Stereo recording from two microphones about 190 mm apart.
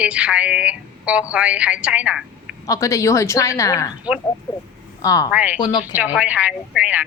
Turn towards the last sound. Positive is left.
turn(degrees=-5)  # may be behind; listen again after turning